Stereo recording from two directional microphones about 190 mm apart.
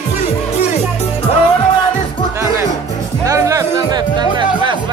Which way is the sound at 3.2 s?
15° right (ahead or behind).